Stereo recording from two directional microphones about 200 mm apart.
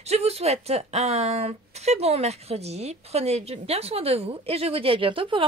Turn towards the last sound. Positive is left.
turn(degrees=-25)  # may be behind; listen again after turning